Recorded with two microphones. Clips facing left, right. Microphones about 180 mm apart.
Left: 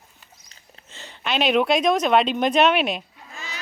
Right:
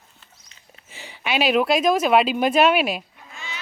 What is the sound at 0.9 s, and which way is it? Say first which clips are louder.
Speech: right 1 dB; 10° right (ahead or behind).